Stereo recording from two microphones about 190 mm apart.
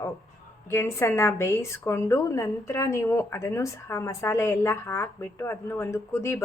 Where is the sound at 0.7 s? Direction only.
10° left (ahead or behind).